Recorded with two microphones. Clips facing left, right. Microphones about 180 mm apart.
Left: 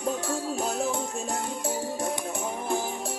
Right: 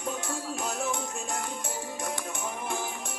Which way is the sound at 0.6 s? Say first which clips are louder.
Left 3 dB; 35° left (ahead or behind).